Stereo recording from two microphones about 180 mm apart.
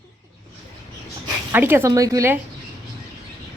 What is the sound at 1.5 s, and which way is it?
Speech, 10° right (ahead or behind).